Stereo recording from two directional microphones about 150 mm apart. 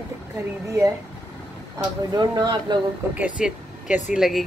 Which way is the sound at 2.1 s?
30° right (ahead or behind).